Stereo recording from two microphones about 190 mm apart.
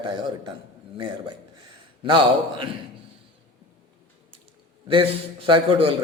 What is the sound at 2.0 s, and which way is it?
Speech, 25° right (ahead or behind).